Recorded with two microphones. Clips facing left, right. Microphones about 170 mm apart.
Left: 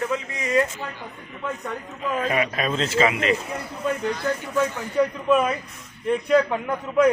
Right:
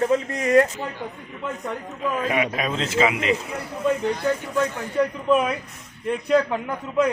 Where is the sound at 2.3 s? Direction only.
10° right (ahead or behind).